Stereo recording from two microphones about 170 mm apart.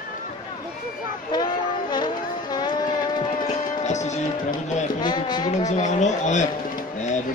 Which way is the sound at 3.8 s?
45° left (ahead or behind).